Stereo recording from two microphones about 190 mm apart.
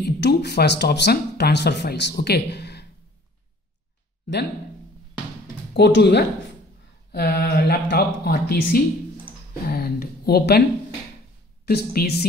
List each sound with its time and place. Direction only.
0.0 s speech: 60° left (ahead or behind)
5.8 s speech: 60° left (ahead or behind)
11.6 s speech: 55° left (ahead or behind)